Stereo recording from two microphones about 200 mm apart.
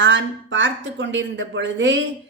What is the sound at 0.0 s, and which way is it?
A woman's voice, 70° right (ahead or behind).